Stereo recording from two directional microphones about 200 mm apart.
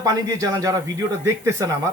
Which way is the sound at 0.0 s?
15° right (ahead or behind).